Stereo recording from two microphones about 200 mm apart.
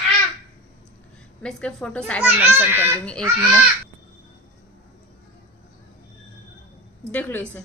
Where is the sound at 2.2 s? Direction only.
10° right (ahead or behind).